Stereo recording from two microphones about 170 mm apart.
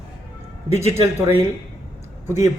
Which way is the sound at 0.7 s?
40° left (ahead or behind).